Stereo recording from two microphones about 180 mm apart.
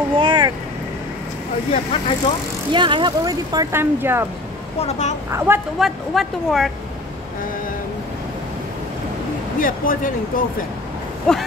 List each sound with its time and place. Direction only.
0.2 s boat: 25° right (ahead or behind)
1.7 s speech: 35° left (ahead or behind)
2.7 s speech: 25° right (ahead or behind)
4.7 s speech: 40° left (ahead or behind)
5.3 s a woman's voice: 10° right (ahead or behind)
5.8 s speech: centre (ahead or behind)
9.6 s speech: 50° left (ahead or behind)
11.3 s speech: 5° left (ahead or behind)